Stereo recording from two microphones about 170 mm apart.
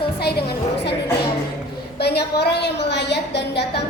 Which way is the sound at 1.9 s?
70° left (ahead or behind).